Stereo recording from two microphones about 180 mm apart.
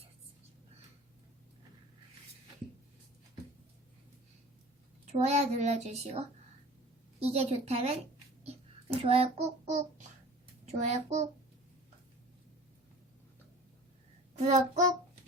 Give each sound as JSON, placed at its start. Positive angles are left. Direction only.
{"t": 5.2, "sound": "child singing", "side_deg": -40}
{"t": 8.9, "sound": "a child's voice", "side_deg": -30}
{"t": 10.7, "sound": "child singing", "side_deg": -40}
{"t": 14.3, "sound": "child singing", "side_deg": -40}